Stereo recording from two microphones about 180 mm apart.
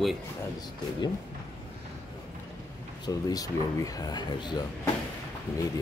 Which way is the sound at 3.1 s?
20° left (ahead or behind).